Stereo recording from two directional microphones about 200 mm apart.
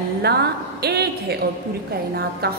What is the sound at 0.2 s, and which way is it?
A woman's voice, 55° right (ahead or behind).